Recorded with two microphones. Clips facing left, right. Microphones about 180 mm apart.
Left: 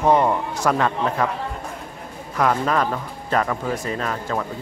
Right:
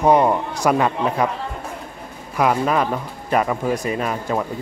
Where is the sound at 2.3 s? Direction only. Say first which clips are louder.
Right 2 dB; 10° right (ahead or behind).